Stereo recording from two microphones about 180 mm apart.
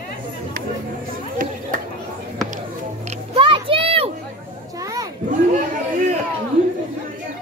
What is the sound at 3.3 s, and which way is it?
Music, 30° right (ahead or behind).